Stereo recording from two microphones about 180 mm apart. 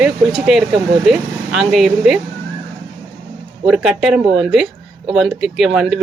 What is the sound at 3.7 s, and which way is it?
Speech, centre (ahead or behind).